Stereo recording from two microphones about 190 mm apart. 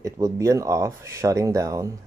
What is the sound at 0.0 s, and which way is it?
Speech, 15° right (ahead or behind).